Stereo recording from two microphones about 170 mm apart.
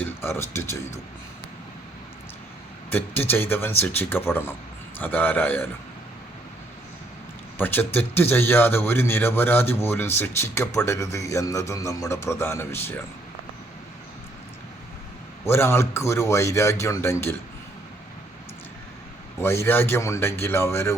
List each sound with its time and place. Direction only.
0.0 s speech: 15° left (ahead or behind)
2.9 s a man's voice: 10° left (ahead or behind)
7.6 s a man's voice: 10° left (ahead or behind)
15.4 s a man's voice: 15° left (ahead or behind)
19.4 s a man's voice: 15° left (ahead or behind)